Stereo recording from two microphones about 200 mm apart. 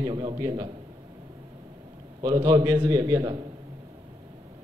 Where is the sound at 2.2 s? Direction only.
20° right (ahead or behind).